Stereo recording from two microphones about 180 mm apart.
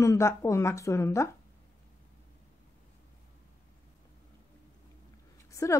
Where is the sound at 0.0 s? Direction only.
15° left (ahead or behind).